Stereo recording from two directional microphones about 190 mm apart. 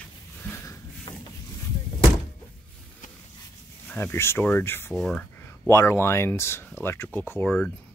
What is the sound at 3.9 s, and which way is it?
Speech, 10° left (ahead or behind).